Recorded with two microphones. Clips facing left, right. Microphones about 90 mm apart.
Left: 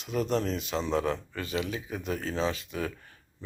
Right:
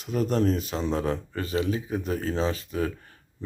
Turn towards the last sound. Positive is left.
turn(degrees=-35)  # may be behind; listen again after turning